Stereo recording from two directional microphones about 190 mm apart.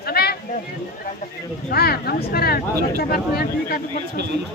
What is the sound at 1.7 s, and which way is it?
Speech, 55° left (ahead or behind).